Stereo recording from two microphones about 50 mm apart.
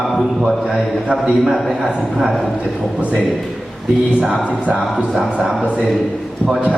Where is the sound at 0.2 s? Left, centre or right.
Centre.